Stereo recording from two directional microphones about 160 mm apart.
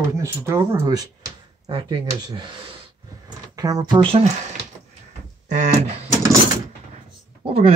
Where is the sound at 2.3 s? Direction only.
30° right (ahead or behind).